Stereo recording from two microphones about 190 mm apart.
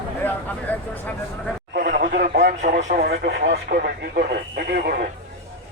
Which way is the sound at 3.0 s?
60° right (ahead or behind).